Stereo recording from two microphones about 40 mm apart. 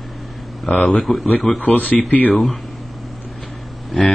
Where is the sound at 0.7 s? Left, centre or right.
Left.